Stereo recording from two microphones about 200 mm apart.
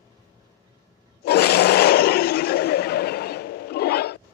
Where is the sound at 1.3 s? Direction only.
55° left (ahead or behind).